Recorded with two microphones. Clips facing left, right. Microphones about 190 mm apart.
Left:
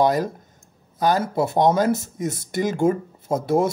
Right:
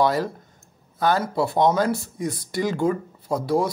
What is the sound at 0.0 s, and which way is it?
Speech, 20° left (ahead or behind).